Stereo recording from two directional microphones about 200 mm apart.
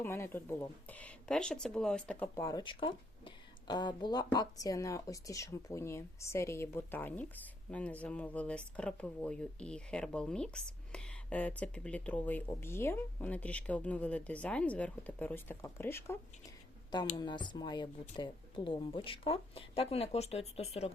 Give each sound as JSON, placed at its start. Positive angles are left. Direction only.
{"t": 0.0, "sound": "speech", "side_deg": 10}
{"t": 17.2, "sound": "speech", "side_deg": 25}